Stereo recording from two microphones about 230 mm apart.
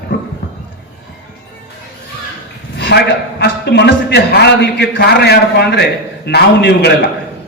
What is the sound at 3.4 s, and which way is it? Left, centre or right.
A man's voice, left.